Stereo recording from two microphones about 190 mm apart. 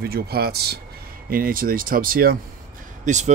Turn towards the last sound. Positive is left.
turn(degrees=-40)  # may be behind; listen again after turning